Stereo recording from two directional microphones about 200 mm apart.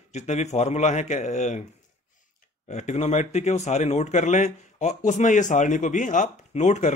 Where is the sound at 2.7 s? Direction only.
35° left (ahead or behind).